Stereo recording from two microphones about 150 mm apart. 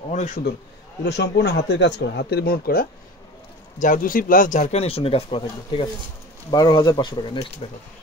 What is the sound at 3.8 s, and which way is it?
Speech, 65° left (ahead or behind).